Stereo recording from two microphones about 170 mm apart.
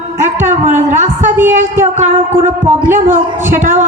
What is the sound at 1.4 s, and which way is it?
Speech, 15° right (ahead or behind).